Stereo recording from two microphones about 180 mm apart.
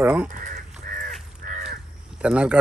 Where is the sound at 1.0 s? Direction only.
45° right (ahead or behind).